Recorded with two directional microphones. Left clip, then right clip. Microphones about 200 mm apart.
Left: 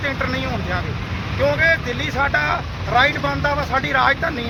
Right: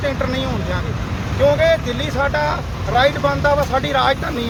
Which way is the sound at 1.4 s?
Centre (ahead or behind).